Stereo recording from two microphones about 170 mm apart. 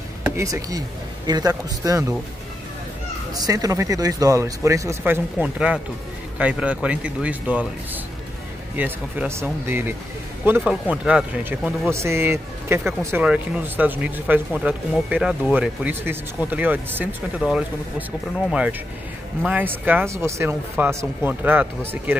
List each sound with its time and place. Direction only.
0.4 s speech: 20° right (ahead or behind)
3.3 s speech: 20° right (ahead or behind)